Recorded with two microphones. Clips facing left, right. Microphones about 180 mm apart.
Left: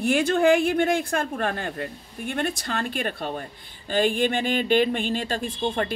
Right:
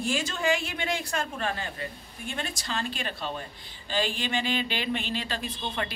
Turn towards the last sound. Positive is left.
turn(degrees=50)  # may be behind; listen again after turning